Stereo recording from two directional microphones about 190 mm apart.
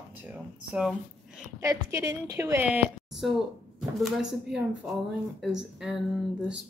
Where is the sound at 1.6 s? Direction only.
15° right (ahead or behind).